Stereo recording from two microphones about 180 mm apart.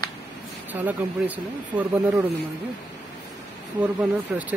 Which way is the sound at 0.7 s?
10° right (ahead or behind).